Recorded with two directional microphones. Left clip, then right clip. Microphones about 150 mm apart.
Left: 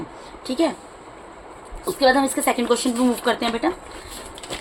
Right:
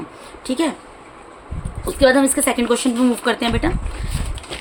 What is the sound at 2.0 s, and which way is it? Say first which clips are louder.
A woman's voice: right 3 dB; 40° right (ahead or behind).